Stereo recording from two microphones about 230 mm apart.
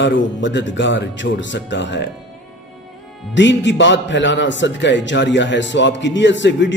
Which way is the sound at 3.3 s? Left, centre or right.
Left.